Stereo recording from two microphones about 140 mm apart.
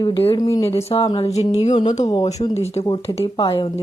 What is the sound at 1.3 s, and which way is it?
Music, 50° left (ahead or behind).